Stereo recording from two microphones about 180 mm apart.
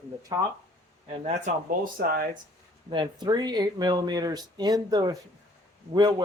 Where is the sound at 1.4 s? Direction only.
50° right (ahead or behind).